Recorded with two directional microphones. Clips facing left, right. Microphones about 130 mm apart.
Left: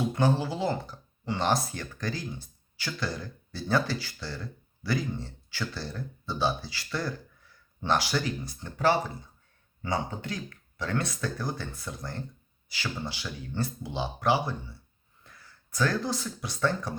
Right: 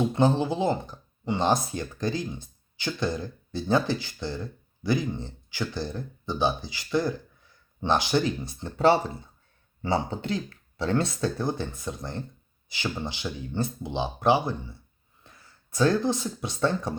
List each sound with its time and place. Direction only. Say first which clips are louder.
0.0 s speech: right 4 dB; 25° right (ahead or behind)